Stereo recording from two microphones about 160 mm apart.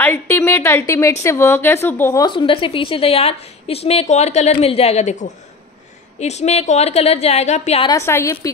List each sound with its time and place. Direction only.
0.0 s a woman's voice: 15° left (ahead or behind)
2.2 s a woman's voice: 35° left (ahead or behind)
7.8 s a woman's voice: 20° left (ahead or behind)